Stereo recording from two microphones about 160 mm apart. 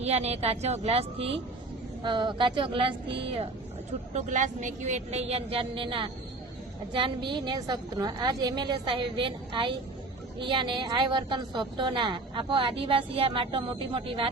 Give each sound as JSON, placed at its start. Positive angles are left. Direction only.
{"t": 0.0, "sound": "a woman's voice", "side_deg": -40}
{"t": 4.1, "sound": "a woman's voice", "side_deg": -50}